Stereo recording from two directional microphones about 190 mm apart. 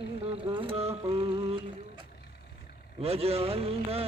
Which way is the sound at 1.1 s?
30° right (ahead or behind).